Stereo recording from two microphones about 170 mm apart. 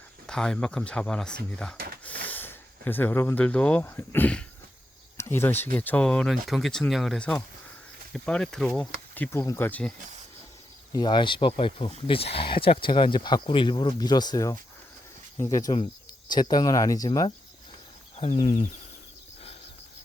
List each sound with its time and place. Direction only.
0.3 s speech: 5° left (ahead or behind)
10.9 s speech: 25° left (ahead or behind)
18.2 s speech: 35° left (ahead or behind)